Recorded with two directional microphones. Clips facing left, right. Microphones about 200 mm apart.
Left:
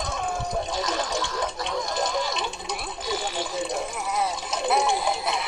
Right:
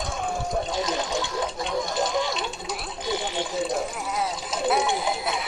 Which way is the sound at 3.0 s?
20° right (ahead or behind).